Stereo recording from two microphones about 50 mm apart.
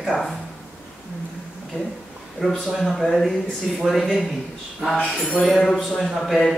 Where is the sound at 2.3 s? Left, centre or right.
Centre.